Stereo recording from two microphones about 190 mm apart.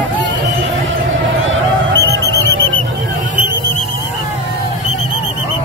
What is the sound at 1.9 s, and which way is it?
Music, 15° left (ahead or behind).